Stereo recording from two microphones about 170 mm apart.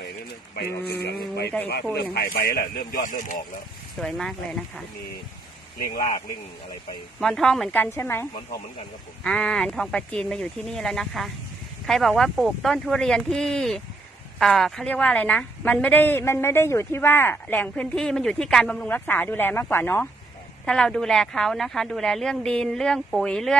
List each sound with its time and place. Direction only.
0.6 s speech: 70° left (ahead or behind); by 3.3 s 50° left (ahead or behind)
4.0 s a woman's voice: 5° left (ahead or behind)
5.9 s speech: 30° left (ahead or behind)
7.2 s a woman's voice: 5° left (ahead or behind)